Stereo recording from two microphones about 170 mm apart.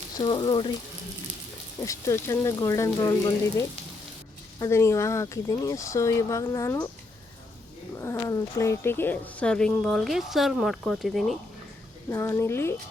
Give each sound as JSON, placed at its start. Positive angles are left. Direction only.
{"t": 0.2, "sound": "speech", "side_deg": 25}
{"t": 1.8, "sound": "speech", "side_deg": 15}
{"t": 4.6, "sound": "speech", "side_deg": 15}
{"t": 7.9, "sound": "speech", "side_deg": 15}
{"t": 12.1, "sound": "speech", "side_deg": 15}